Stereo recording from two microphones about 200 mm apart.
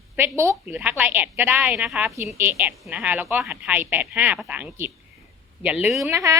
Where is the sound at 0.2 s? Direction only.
10° right (ahead or behind).